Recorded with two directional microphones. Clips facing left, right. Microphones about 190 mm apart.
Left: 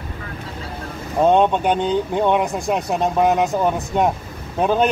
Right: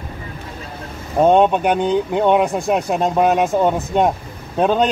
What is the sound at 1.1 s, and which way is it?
Speech, 15° right (ahead or behind).